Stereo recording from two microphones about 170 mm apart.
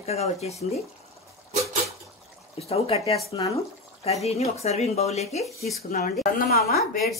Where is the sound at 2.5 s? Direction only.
35° left (ahead or behind).